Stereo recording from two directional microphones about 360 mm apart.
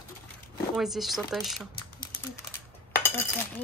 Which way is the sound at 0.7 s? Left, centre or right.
Centre.